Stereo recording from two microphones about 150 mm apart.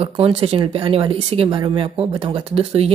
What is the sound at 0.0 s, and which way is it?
Speech, 40° right (ahead or behind).